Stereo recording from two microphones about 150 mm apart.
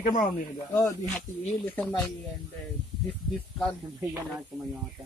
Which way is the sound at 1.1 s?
10° left (ahead or behind).